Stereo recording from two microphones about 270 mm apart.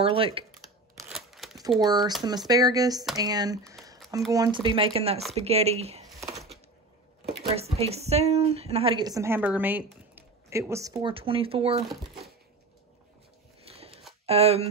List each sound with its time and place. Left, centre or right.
0.0 s a sound: centre
1.1 s crumpling: centre
1.8 s a woman's voice: centre
7.4 s a woman's voice: right
13.7 s a sound: right
14.2 s speech: right